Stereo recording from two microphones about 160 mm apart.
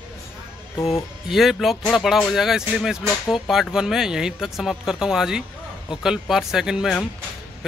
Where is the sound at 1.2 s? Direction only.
Centre (ahead or behind).